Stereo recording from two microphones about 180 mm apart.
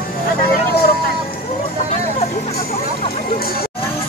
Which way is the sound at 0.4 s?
60° left (ahead or behind).